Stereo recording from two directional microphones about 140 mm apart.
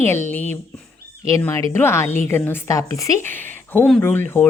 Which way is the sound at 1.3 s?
20° left (ahead or behind).